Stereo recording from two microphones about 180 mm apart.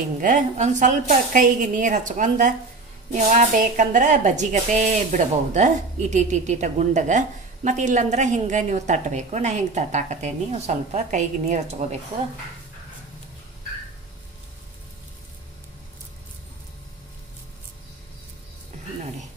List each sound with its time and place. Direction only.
0.2 s a woman's voice: 45° right (ahead or behind)